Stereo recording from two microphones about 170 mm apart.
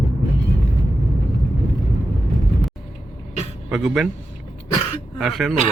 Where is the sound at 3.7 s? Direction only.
Centre (ahead or behind).